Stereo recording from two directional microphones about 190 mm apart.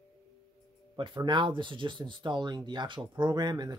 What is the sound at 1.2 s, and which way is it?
Speech, 25° right (ahead or behind).